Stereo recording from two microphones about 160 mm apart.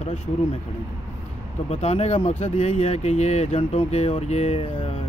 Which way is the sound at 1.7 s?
40° left (ahead or behind).